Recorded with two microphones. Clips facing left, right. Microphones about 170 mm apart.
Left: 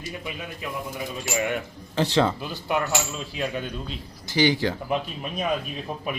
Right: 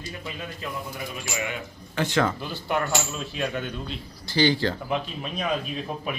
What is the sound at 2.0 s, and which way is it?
Speech, 30° left (ahead or behind).